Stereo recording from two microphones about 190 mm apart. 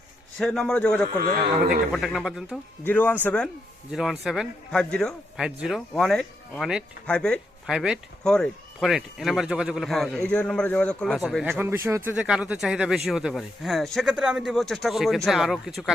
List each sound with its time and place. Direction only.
0.3 s a man's voice: centre (ahead or behind)
2.8 s a man's voice: 10° left (ahead or behind)
11.5 s a man's voice: 10° right (ahead or behind)